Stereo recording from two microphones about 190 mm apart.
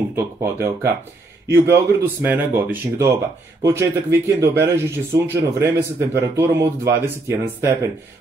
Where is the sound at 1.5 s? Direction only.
10° right (ahead or behind).